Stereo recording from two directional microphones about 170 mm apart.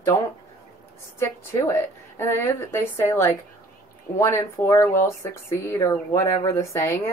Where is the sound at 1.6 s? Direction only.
15° left (ahead or behind).